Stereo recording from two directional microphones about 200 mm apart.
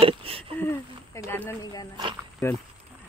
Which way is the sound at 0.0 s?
30° right (ahead or behind).